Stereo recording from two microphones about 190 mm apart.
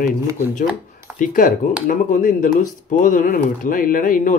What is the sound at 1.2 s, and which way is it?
Speech, 45° left (ahead or behind).